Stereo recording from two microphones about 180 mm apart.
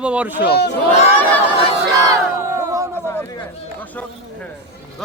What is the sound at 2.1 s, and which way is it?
Crowd, 15° right (ahead or behind).